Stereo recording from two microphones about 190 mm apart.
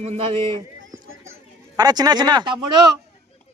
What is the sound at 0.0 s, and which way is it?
Speech, 35° right (ahead or behind).